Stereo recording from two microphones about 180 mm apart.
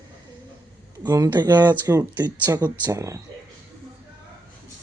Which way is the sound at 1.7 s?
15° right (ahead or behind).